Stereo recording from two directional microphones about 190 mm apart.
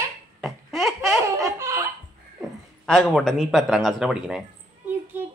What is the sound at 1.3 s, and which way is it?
Laughter, 15° right (ahead or behind).